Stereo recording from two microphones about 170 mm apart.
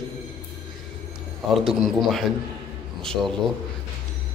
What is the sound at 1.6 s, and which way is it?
Speech, centre (ahead or behind).